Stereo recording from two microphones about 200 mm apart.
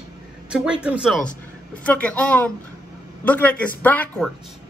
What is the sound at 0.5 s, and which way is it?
A man's voice, 5° right (ahead or behind).